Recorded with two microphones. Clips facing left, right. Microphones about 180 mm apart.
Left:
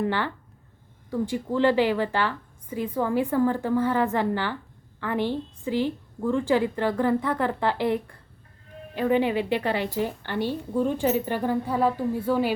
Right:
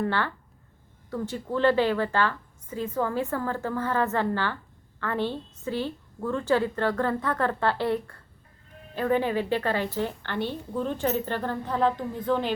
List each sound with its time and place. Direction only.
0.0 s a woman's voice: 15° left (ahead or behind)